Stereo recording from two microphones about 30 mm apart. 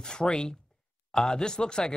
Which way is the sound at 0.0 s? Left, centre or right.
Left.